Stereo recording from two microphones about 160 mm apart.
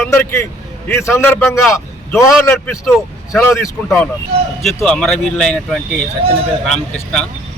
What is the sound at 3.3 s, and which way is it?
Speech, 15° left (ahead or behind).